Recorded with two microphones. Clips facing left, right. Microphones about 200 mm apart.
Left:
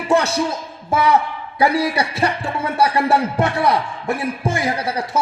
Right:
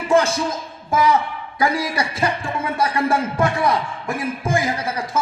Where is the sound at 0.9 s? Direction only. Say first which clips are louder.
Left 1 dB; 65° left (ahead or behind).